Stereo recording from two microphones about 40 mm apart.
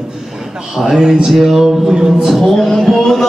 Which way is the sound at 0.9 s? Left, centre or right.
Centre.